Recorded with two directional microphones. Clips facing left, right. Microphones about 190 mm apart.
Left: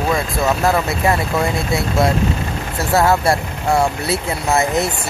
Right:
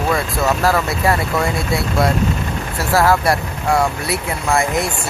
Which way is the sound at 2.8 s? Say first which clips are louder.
Even; 25° left (ahead or behind).